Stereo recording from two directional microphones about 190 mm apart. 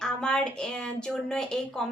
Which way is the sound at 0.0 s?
5° left (ahead or behind).